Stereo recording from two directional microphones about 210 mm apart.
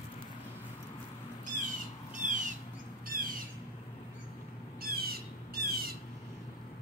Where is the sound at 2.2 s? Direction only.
35° right (ahead or behind).